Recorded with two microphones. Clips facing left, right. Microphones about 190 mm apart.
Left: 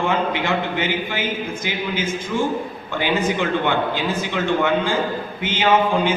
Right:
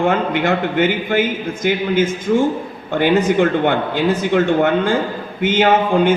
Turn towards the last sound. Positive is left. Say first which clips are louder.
# right 4 dB
turn(degrees=-50)  # may be behind; listen again after turning